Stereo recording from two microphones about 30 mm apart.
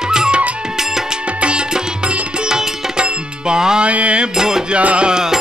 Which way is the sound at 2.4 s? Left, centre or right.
Right.